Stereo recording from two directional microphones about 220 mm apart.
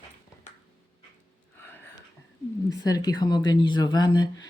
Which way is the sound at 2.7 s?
15° left (ahead or behind).